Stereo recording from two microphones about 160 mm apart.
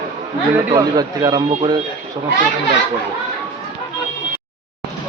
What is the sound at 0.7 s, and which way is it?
Speech, 25° right (ahead or behind).